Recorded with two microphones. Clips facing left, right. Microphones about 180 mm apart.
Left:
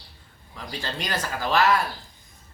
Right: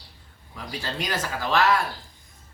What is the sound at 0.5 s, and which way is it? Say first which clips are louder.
Speech: right 1 dB; 5° right (ahead or behind).